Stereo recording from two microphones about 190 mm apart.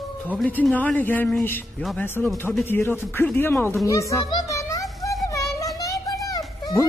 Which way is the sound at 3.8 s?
15° left (ahead or behind).